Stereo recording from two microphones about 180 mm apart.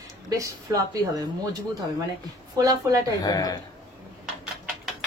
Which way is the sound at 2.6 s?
20° right (ahead or behind).